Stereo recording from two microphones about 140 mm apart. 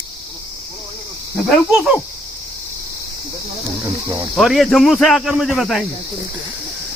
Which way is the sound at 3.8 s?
25° right (ahead or behind).